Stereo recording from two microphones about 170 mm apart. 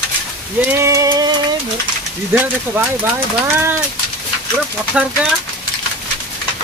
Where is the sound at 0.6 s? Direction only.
15° right (ahead or behind).